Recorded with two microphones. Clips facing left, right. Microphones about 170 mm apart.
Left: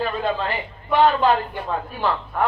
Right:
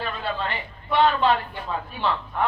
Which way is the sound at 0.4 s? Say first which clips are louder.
Left 3 dB; 40° left (ahead or behind).